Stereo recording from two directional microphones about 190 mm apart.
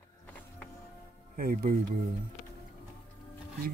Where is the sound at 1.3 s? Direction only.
50° right (ahead or behind).